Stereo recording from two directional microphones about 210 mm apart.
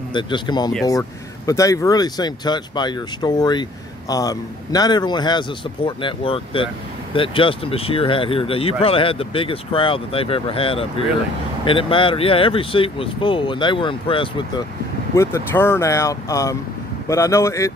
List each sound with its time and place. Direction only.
0.1 s speech: 20° left (ahead or behind)
15.1 s speech: 10° left (ahead or behind)